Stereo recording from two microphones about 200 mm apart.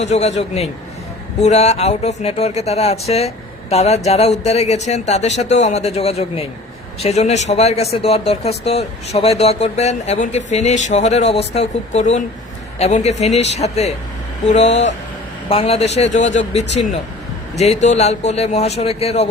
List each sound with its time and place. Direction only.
0.0 s speech: 35° left (ahead or behind)